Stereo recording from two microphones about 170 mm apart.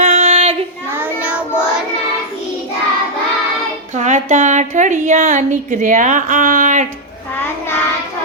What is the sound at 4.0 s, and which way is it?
Speech, 45° right (ahead or behind).